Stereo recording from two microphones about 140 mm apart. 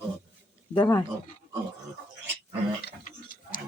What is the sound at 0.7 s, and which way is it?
Speech, 30° left (ahead or behind).